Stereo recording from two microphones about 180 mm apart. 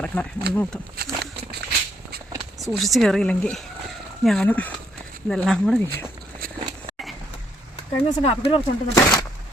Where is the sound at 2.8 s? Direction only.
Centre (ahead or behind).